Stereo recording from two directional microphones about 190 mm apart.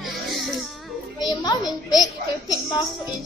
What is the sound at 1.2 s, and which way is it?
A child's voice, 20° left (ahead or behind).